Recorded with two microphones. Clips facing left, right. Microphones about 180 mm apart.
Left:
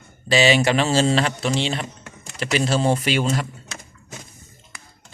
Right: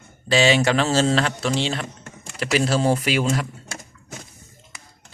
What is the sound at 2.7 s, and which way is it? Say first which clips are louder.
Speech: left 2 dB; 5° right (ahead or behind).